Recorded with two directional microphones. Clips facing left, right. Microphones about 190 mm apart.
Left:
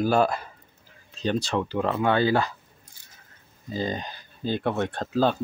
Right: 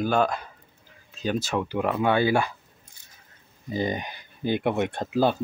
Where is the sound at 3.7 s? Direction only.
15° right (ahead or behind).